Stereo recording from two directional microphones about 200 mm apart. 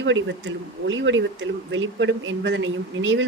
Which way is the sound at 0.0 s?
65° right (ahead or behind).